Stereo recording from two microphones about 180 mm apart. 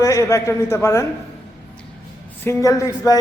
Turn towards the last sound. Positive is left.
turn(degrees=20)  # may be behind; listen again after turning